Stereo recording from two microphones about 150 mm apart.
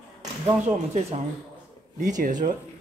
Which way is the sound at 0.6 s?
50° right (ahead or behind).